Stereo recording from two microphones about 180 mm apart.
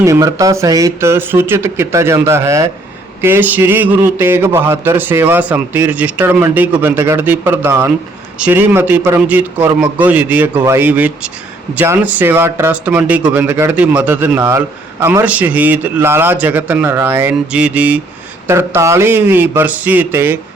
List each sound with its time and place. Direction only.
0.0 s a man's voice: 15° right (ahead or behind)